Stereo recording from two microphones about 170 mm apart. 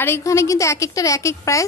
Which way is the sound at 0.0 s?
15° left (ahead or behind).